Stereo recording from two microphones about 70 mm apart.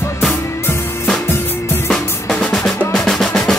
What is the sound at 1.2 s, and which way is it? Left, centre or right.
Music, left.